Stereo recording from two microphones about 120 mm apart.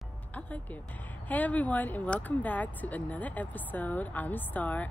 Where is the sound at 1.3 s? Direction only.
15° left (ahead or behind).